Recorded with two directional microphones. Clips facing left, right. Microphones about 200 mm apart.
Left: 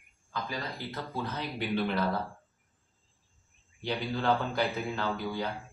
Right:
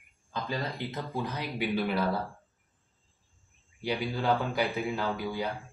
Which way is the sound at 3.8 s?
10° right (ahead or behind).